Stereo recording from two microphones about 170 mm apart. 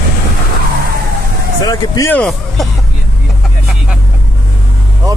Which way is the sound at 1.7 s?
20° left (ahead or behind).